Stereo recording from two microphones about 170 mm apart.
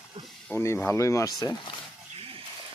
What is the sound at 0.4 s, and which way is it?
Speech, 15° left (ahead or behind).